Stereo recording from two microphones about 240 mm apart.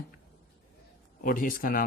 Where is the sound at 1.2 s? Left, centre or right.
Left.